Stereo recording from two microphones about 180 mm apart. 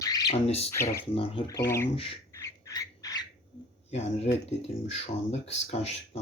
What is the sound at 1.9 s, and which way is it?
Speech, 30° left (ahead or behind).